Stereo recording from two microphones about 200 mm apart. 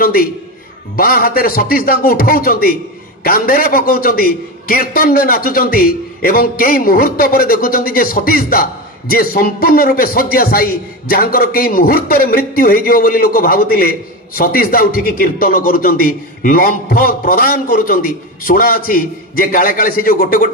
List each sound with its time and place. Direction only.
0.0 s a man's voice: 45° left (ahead or behind)